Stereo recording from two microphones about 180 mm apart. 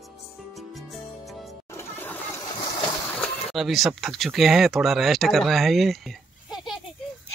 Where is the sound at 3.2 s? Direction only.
Centre (ahead or behind).